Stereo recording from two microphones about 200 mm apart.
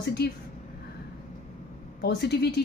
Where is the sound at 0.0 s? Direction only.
55° left (ahead or behind).